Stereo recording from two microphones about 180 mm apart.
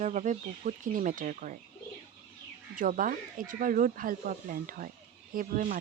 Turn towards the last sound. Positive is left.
turn(degrees=-50)  # may be behind; listen again after turning